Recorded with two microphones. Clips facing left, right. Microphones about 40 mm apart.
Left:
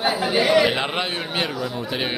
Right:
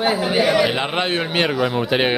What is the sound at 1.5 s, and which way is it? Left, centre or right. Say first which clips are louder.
Speech: right 7 dB; right.